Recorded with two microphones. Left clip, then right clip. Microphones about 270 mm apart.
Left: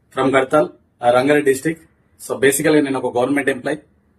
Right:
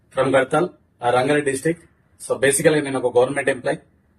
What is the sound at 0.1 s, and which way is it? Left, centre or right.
Speech, centre.